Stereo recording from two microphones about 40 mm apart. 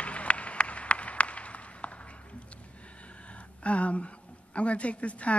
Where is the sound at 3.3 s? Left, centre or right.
Left.